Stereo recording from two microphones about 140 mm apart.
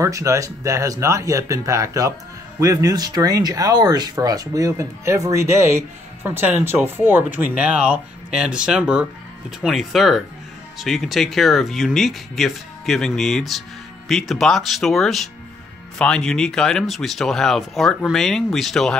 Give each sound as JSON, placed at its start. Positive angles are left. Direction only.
{"t": 0.0, "sound": "speech", "side_deg": -25}